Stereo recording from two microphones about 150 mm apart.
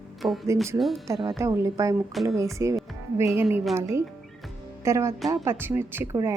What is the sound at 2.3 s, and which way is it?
A woman's voice, 20° right (ahead or behind).